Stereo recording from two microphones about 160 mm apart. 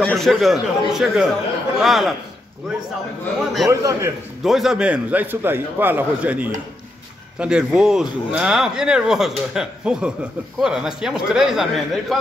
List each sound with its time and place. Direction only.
0.0 s speech: centre (ahead or behind)
3.6 s a man's voice: 20° right (ahead or behind)
4.4 s a man's voice: centre (ahead or behind)